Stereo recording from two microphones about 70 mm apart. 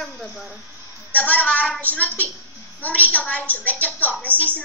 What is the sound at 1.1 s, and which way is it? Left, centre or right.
A woman's voice, left.